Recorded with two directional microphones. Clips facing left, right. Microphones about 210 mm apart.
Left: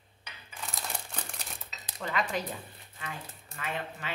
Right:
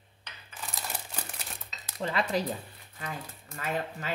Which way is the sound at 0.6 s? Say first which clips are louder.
Even; 5° right (ahead or behind).